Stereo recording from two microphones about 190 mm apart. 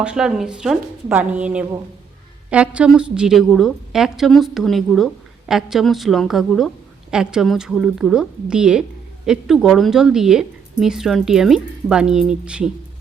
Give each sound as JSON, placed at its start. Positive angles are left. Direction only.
{"t": 0.0, "sound": "a woman's voice", "side_deg": -5}